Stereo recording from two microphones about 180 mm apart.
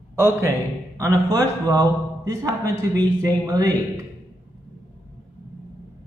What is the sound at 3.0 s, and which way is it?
A man's voice, 20° right (ahead or behind).